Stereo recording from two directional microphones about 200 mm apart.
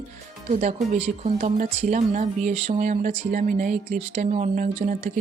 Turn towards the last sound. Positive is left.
turn(degrees=-35)  # may be behind; listen again after turning